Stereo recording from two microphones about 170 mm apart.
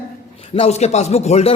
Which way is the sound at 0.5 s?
40° left (ahead or behind).